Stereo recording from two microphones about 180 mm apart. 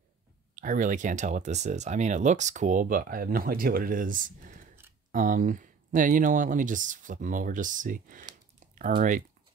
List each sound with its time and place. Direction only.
0.6 s speech: 45° right (ahead or behind)
8.9 s speech: 25° right (ahead or behind)